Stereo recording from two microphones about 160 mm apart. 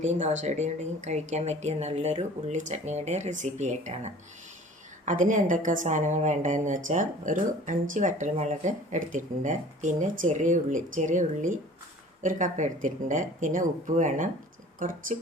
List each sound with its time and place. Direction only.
0.0 s a woman's voice: 50° right (ahead or behind)